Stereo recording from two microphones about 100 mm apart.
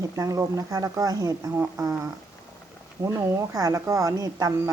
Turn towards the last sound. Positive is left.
turn(degrees=-35)  # may be behind; listen again after turning